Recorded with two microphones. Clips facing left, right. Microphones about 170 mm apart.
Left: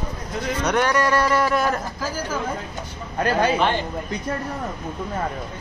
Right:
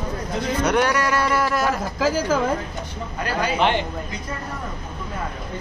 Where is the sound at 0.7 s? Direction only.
10° right (ahead or behind).